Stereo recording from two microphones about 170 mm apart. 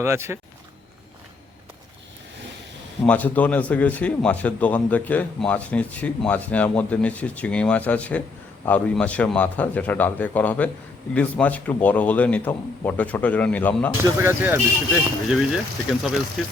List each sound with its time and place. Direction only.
0.0 s speech: 15° right (ahead or behind)
3.0 s a man's voice: 10° left (ahead or behind)
14.0 s speech: 15° right (ahead or behind)
14.9 s speech: 5° right (ahead or behind)